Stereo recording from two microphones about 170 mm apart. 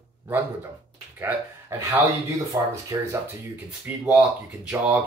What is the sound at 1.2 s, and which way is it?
Speech, 15° right (ahead or behind).